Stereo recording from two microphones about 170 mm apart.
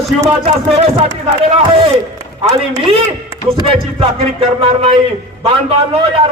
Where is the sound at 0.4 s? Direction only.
35° right (ahead or behind).